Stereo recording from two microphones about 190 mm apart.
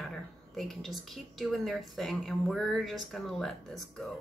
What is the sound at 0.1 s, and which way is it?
A woman's voice, centre (ahead or behind).